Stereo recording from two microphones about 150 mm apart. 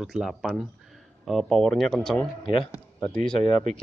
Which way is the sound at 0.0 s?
Centre (ahead or behind).